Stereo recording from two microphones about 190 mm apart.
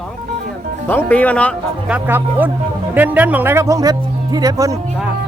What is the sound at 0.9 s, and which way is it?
Speech, 10° left (ahead or behind).